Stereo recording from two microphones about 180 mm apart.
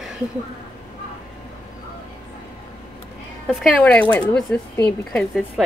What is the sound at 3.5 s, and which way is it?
A woman's voice, 5° left (ahead or behind).